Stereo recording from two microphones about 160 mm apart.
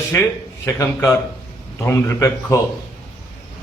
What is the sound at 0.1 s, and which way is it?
Speech, 15° left (ahead or behind).